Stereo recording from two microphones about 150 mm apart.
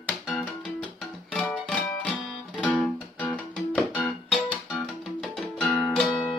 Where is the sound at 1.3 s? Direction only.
5° left (ahead or behind).